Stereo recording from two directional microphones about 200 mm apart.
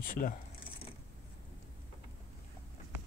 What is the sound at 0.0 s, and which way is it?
Speech, 45° left (ahead or behind).